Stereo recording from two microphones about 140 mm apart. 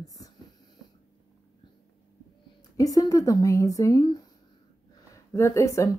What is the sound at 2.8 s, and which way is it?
Speech, 25° left (ahead or behind).